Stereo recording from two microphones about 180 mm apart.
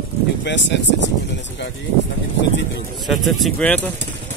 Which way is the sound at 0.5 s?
75° left (ahead or behind).